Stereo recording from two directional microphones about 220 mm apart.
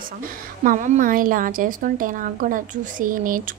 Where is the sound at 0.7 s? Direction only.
35° right (ahead or behind).